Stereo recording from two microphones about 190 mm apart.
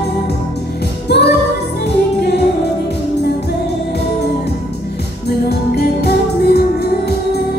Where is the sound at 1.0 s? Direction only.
60° left (ahead or behind).